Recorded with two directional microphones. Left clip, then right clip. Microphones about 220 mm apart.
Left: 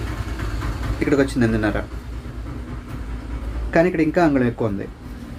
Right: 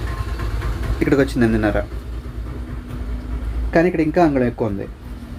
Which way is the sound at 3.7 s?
15° right (ahead or behind).